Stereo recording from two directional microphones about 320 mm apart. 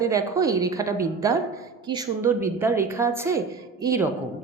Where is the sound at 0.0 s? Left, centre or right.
Centre.